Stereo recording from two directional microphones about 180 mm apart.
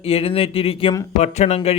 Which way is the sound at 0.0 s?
30° left (ahead or behind).